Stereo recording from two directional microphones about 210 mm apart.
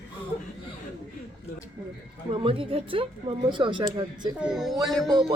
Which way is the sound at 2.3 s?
25° right (ahead or behind).